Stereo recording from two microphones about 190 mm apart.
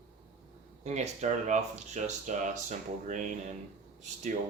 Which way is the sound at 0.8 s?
35° right (ahead or behind).